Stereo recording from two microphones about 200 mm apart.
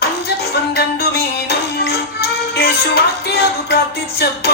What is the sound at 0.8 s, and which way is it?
Music, 55° left (ahead or behind).